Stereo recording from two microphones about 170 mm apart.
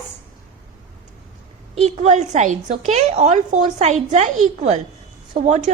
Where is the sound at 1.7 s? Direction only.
40° right (ahead or behind).